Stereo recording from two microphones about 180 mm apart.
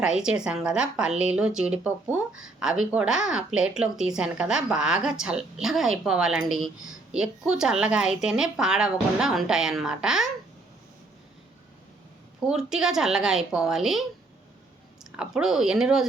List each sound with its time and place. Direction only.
0.0 s speech: 5° right (ahead or behind)
12.5 s speech: 5° right (ahead or behind)
15.1 s speech: 5° right (ahead or behind)